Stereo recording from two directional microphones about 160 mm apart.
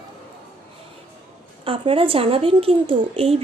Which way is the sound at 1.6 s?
35° right (ahead or behind).